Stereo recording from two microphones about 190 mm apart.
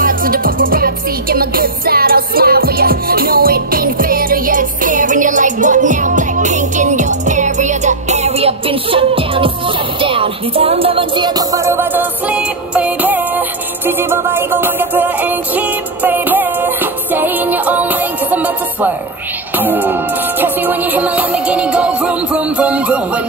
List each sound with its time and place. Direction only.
0.0 s music: 50° right (ahead or behind); by 23.2 s 5° right (ahead or behind)